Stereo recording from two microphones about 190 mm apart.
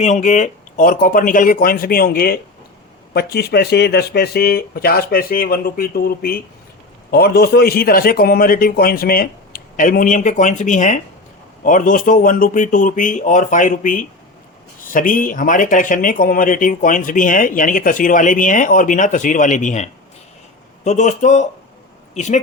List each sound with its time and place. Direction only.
0.0 s speech: 40° left (ahead or behind)